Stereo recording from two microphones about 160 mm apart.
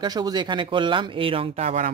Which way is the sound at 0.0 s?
25° right (ahead or behind).